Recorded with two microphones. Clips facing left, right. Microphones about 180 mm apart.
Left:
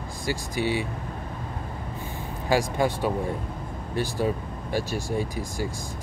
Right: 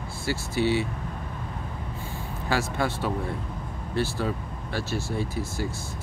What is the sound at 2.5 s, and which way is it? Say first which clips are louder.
Speech: left 4 dB; 15° left (ahead or behind).